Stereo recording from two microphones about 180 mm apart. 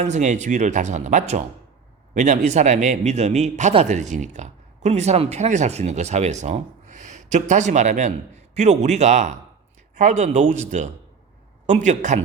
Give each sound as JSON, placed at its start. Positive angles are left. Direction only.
{"t": 0.0, "sound": "a man's voice", "side_deg": -40}